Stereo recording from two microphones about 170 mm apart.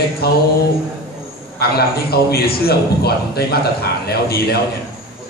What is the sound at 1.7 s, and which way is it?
A man's voice, 65° left (ahead or behind).